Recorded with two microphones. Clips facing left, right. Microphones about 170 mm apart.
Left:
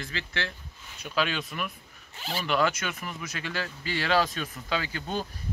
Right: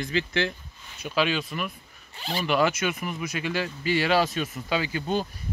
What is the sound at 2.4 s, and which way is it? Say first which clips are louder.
Speech: right 3 dB; 10° right (ahead or behind).